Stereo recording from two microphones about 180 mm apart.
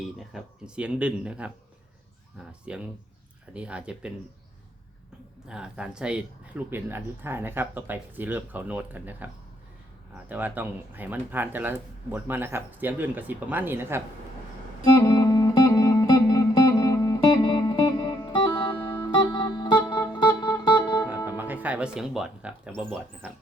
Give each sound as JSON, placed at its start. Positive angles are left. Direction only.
{"t": 0.0, "sound": "speech", "side_deg": 0}
{"t": 5.5, "sound": "speech", "side_deg": -5}
{"t": 14.9, "sound": "music", "side_deg": 20}
{"t": 21.2, "sound": "music", "side_deg": -10}